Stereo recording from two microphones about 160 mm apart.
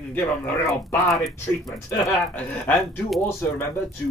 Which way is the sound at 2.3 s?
10° left (ahead or behind).